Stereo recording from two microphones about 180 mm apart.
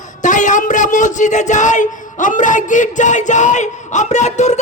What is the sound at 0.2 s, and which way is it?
Speech, 45° left (ahead or behind).